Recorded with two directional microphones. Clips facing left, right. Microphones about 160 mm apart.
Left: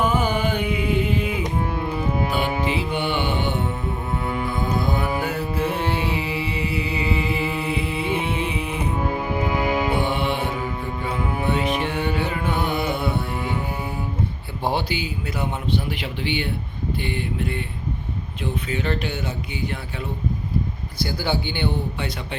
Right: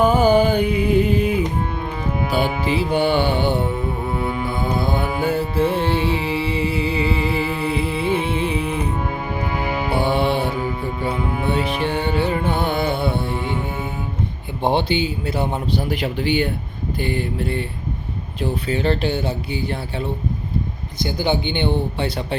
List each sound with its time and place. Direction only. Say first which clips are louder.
0.0 s carnatic music: right 7 dB; 35° right (ahead or behind)
2.6 s music: right 5 dB; 35° right (ahead or behind)
4.8 s mantra: right 2 dB; 30° right (ahead or behind)
5.2 s music: right 5 dB; 30° right (ahead or behind)
9.9 s mantra: right 4 dB; 35° right (ahead or behind)
11.0 s music: right 2 dB; 30° right (ahead or behind)
14.6 s a man's voice: right 6 dB; 25° right (ahead or behind)
21.0 s speech: right 4 dB; 20° right (ahead or behind)